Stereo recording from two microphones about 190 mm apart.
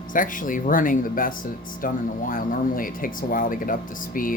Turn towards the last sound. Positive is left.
turn(degrees=45)  # may be behind; listen again after turning